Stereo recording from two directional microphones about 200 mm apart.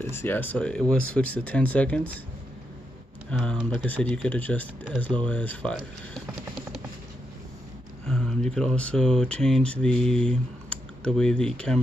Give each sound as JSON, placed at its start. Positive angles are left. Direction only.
{"t": 0.0, "sound": "speech", "side_deg": 10}
{"t": 3.3, "sound": "speech", "side_deg": 0}
{"t": 8.1, "sound": "speech", "side_deg": 5}